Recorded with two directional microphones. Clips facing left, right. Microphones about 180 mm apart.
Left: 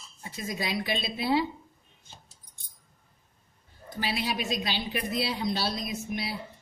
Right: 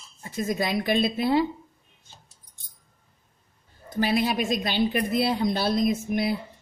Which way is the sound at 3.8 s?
45° right (ahead or behind).